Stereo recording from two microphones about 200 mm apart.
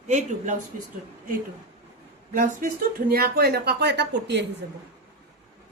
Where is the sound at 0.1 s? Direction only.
35° right (ahead or behind).